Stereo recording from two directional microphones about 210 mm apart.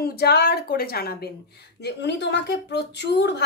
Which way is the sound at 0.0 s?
50° left (ahead or behind).